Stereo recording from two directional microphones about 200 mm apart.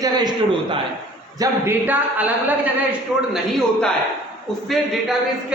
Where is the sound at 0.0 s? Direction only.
20° right (ahead or behind).